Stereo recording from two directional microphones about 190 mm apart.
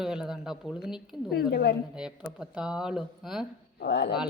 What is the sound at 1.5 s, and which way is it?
Speech, 55° left (ahead or behind).